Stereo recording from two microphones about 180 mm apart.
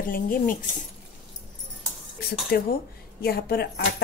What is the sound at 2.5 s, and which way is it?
A woman's voice, 65° left (ahead or behind).